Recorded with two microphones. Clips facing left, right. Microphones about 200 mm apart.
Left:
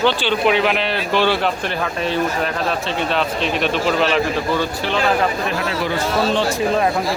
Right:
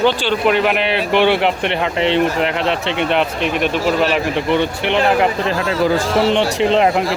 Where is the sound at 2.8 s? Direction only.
65° right (ahead or behind).